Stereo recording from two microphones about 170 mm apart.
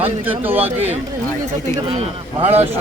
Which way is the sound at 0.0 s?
10° right (ahead or behind).